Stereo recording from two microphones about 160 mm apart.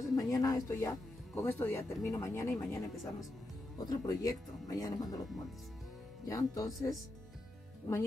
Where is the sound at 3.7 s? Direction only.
25° left (ahead or behind).